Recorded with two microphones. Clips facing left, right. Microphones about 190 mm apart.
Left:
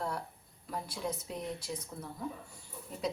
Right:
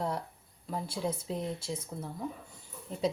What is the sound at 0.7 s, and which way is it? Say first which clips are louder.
Speech: right 4 dB; 30° right (ahead or behind).